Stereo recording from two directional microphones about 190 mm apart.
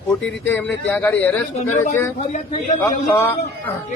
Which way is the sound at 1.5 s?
40° left (ahead or behind).